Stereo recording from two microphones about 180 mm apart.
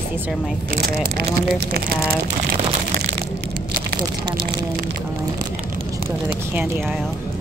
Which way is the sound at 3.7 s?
60° right (ahead or behind).